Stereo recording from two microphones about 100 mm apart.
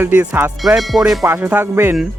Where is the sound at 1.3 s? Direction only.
20° right (ahead or behind).